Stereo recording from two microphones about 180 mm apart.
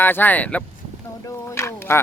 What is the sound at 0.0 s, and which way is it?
Speech, 10° left (ahead or behind).